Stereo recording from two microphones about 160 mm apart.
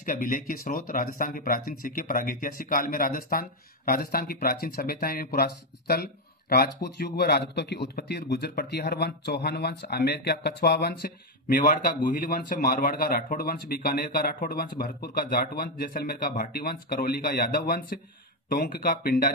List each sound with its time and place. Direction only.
0.0 s a man's voice: 55° left (ahead or behind)